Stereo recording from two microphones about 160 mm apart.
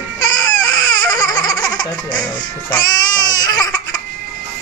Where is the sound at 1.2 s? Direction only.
25° left (ahead or behind).